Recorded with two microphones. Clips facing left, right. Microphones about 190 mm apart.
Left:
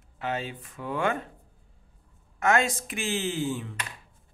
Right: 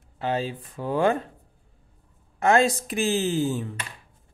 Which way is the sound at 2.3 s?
30° right (ahead or behind).